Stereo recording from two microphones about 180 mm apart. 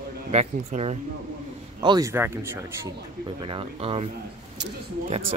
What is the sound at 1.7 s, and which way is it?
Speech, 20° right (ahead or behind).